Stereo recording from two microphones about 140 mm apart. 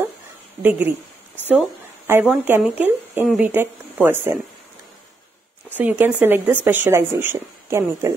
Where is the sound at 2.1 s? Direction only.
15° right (ahead or behind).